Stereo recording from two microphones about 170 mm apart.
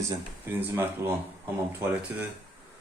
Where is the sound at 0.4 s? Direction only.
10° right (ahead or behind).